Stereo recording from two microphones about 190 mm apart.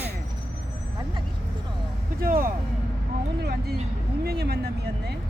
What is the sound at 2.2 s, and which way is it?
Speech, 50° right (ahead or behind).